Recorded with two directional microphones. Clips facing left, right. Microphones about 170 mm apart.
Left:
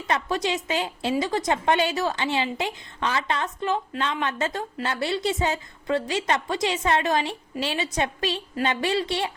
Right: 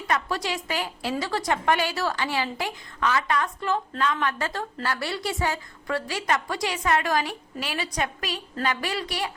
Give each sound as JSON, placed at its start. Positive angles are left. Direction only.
{"t": 0.1, "sound": "a woman's voice", "side_deg": 20}